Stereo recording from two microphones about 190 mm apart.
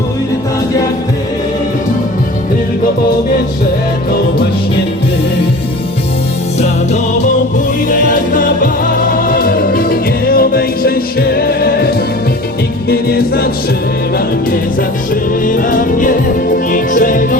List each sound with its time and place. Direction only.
7.9 s music: 45° left (ahead or behind)
12.9 s music: 55° left (ahead or behind)
15.4 s music: 45° left (ahead or behind)